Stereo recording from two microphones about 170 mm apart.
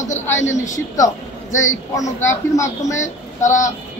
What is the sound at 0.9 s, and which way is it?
A man's voice, 20° left (ahead or behind).